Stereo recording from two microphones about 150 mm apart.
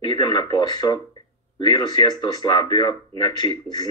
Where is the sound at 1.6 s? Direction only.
25° left (ahead or behind).